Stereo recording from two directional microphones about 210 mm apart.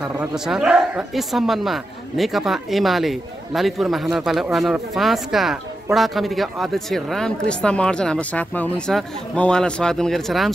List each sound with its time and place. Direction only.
0.2 s speech: 5° right (ahead or behind)